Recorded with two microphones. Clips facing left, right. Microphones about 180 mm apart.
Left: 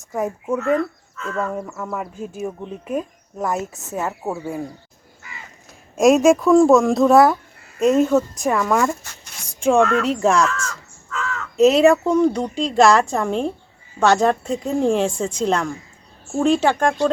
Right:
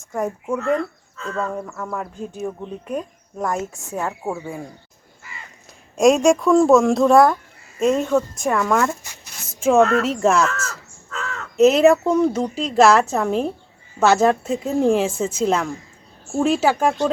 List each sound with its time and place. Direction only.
0.1 s speech: centre (ahead or behind)
0.8 s bird: 30° right (ahead or behind)
1.5 s speech: 5° left (ahead or behind)
5.2 s crow: centre (ahead or behind)
6.0 s speech: centre (ahead or behind)
9.0 s a sound: 5° right (ahead or behind)
10.0 s speech: centre (ahead or behind)
11.1 s crow: 35° right (ahead or behind)
11.5 s speech: centre (ahead or behind)